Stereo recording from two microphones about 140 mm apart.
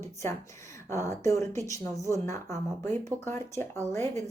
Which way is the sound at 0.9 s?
20° left (ahead or behind).